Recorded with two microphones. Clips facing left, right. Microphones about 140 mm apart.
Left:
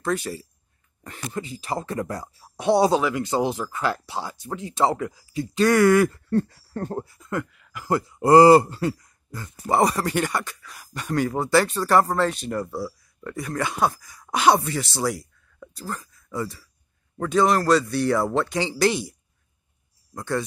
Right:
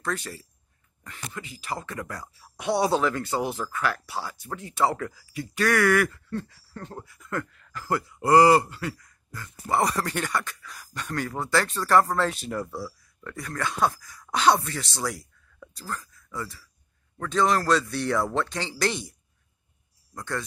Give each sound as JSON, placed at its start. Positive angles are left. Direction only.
{"t": 0.0, "sound": "speech", "side_deg": 10}
{"t": 1.0, "sound": "speech", "side_deg": 35}
{"t": 2.9, "sound": "speech", "side_deg": 15}
{"t": 6.2, "sound": "speech", "side_deg": 45}
{"t": 7.2, "sound": "speech", "side_deg": 20}
{"t": 7.9, "sound": "speech", "side_deg": 25}
{"t": 12.2, "sound": "speech", "side_deg": 0}
{"t": 13.2, "sound": "speech", "side_deg": 10}
{"t": 20.2, "sound": "speech", "side_deg": 10}